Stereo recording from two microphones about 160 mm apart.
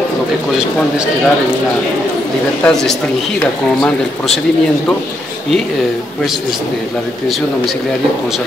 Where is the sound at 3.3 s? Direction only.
5° left (ahead or behind).